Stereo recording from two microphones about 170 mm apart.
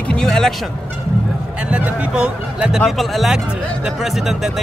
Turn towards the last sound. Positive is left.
turn(degrees=0)  # may be behind; listen again after turning